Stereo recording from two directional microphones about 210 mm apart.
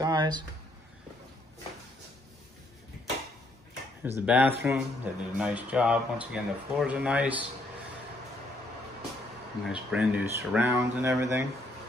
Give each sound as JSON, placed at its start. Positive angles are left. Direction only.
{"t": 0.0, "sound": "a sound", "side_deg": -20}
{"t": 4.0, "sound": "speech", "side_deg": -10}
{"t": 9.7, "sound": "speech", "side_deg": -5}